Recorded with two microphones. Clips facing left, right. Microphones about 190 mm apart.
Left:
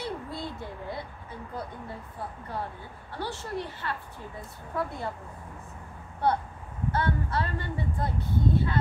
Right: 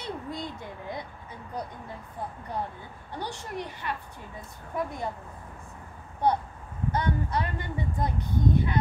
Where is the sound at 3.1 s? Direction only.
15° right (ahead or behind).